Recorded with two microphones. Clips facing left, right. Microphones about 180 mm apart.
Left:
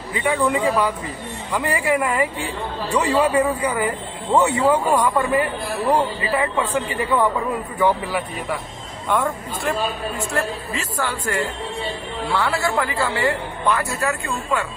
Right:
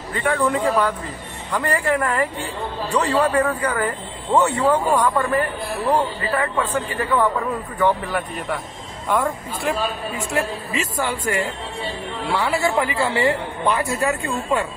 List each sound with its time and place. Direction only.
0.1 s a man's voice: 5° left (ahead or behind); by 14.1 s 20° right (ahead or behind)
14.2 s speech: 30° right (ahead or behind)